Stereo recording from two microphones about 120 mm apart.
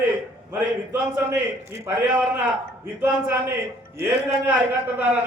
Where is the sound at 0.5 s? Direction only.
15° right (ahead or behind).